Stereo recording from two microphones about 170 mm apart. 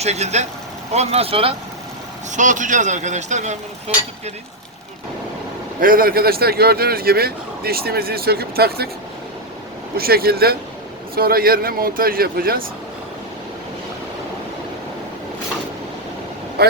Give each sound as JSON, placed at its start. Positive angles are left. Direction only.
{"t": 0.0, "sound": "speech", "side_deg": -40}
{"t": 2.3, "sound": "speech", "side_deg": -45}
{"t": 5.8, "sound": "speech", "side_deg": -55}
{"t": 10.0, "sound": "speech", "side_deg": -65}
{"t": 16.6, "sound": "speech", "side_deg": -65}